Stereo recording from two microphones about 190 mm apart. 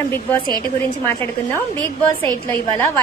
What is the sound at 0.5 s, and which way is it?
Speech, 20° right (ahead or behind).